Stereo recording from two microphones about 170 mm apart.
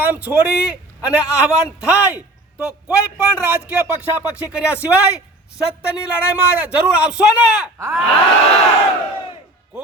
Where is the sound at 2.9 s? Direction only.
15° left (ahead or behind).